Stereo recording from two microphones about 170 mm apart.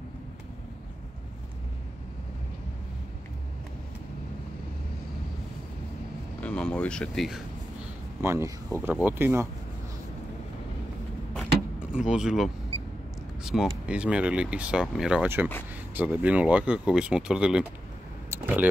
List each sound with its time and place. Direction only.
6.4 s speech: 5° left (ahead or behind)
8.2 s speech: 15° right (ahead or behind)
11.3 s vehicle: 5° right (ahead or behind)
13.4 s speech: 5° right (ahead or behind)
18.3 s a sound: 10° right (ahead or behind)